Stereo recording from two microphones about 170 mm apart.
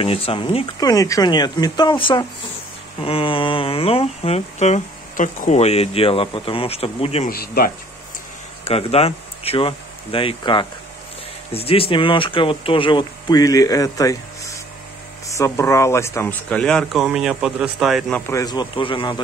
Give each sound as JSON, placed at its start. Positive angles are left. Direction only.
{"t": 0.0, "sound": "speech", "side_deg": 35}
{"t": 0.7, "sound": "speech", "side_deg": 20}
{"t": 7.2, "sound": "speech", "side_deg": 60}
{"t": 8.6, "sound": "speech", "side_deg": 35}
{"t": 18.2, "sound": "speech", "side_deg": 20}